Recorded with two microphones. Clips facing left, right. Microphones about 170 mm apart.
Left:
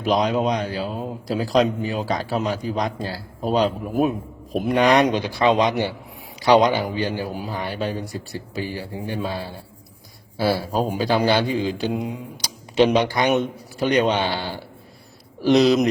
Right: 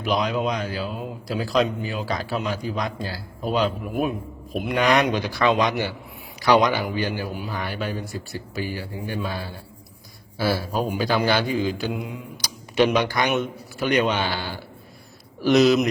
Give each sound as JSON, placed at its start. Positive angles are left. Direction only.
{"t": 0.0, "sound": "a man's voice", "side_deg": 35}